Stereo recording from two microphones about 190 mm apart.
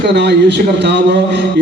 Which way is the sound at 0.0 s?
65° right (ahead or behind).